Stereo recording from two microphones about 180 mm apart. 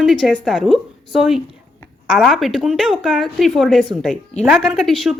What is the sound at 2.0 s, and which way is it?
A woman's voice, centre (ahead or behind).